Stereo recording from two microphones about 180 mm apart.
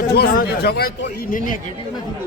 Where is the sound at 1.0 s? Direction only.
50° left (ahead or behind).